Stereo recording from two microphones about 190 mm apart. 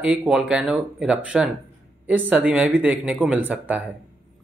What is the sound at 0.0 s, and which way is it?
Speech, 5° right (ahead or behind).